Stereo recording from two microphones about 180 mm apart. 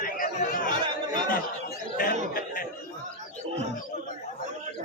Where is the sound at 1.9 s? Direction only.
55° left (ahead or behind).